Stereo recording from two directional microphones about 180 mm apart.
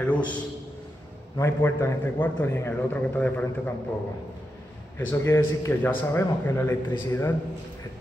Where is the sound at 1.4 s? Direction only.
15° left (ahead or behind).